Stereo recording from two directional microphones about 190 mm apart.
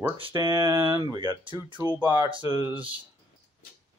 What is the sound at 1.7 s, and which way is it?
Speech, 10° right (ahead or behind).